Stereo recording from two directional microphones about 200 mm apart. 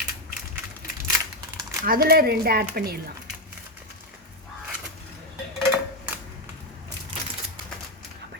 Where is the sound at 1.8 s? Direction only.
50° right (ahead or behind).